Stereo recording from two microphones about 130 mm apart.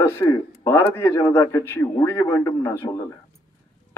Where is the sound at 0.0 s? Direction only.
20° left (ahead or behind).